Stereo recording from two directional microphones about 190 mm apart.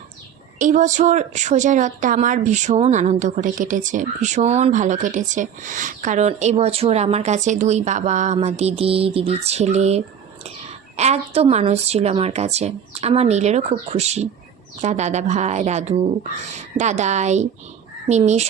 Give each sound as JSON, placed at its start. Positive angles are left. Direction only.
{"t": 0.6, "sound": "a woman's voice", "side_deg": -40}